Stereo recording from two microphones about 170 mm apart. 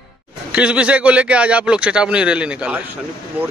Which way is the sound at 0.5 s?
5° right (ahead or behind).